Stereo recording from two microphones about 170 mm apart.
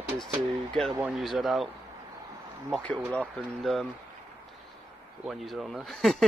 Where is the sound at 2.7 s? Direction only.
5° left (ahead or behind).